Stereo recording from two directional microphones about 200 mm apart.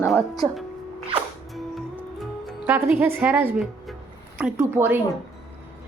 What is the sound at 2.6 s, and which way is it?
A woman's voice, 10° right (ahead or behind).